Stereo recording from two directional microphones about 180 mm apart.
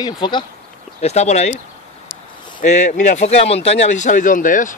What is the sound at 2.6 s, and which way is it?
Speech, 40° left (ahead or behind).